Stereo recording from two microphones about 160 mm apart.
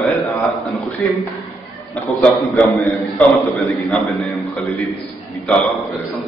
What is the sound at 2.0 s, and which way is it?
A man's voice, centre (ahead or behind).